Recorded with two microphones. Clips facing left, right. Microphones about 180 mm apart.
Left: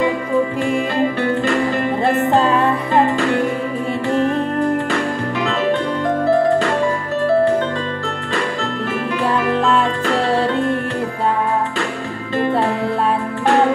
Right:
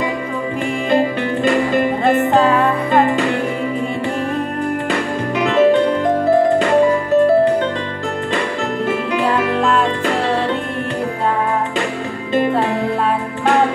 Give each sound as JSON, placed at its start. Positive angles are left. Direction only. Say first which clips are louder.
{"t": 5.4, "sound": "music", "louder": "right 7 dB", "side_deg": -20}